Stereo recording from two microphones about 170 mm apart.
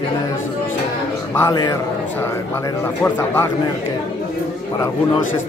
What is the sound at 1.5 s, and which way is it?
Speech, 20° left (ahead or behind).